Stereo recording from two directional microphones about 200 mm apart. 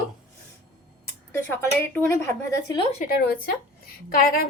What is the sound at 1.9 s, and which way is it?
Speech, 10° left (ahead or behind).